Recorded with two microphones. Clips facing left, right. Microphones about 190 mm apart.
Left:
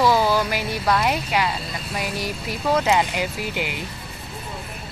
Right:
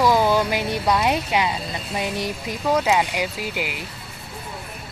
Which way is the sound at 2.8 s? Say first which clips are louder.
Left 1 dB; 10° right (ahead or behind).